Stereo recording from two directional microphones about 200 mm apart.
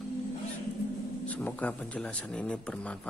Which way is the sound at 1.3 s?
5° left (ahead or behind).